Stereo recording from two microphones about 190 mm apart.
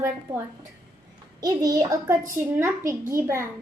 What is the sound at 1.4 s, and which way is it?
A child's voice, 20° right (ahead or behind).